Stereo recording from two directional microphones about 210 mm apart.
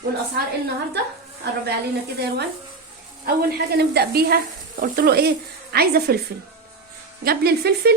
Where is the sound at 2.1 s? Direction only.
50° right (ahead or behind).